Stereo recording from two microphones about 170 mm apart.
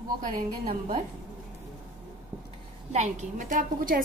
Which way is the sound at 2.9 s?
45° right (ahead or behind).